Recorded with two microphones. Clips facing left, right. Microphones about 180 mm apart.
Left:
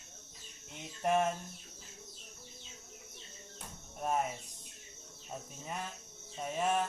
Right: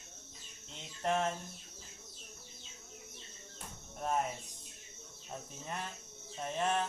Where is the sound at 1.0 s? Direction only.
10° left (ahead or behind).